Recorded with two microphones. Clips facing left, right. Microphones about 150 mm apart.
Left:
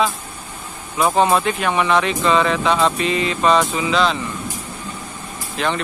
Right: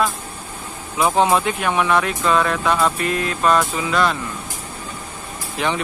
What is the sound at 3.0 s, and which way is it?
Speech, 90° left.